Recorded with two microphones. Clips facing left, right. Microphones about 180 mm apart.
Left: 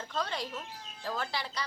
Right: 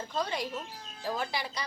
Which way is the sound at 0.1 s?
15° right (ahead or behind).